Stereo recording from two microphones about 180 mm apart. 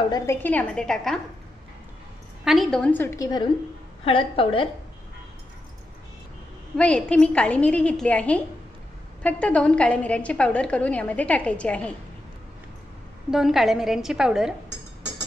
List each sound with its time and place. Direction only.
0.1 s a woman's voice: 15° left (ahead or behind)
2.4 s a woman's voice: centre (ahead or behind); by 4.6 s 30° left (ahead or behind)
6.8 s a woman's voice: 5° left (ahead or behind)
13.3 s a woman's voice: centre (ahead or behind)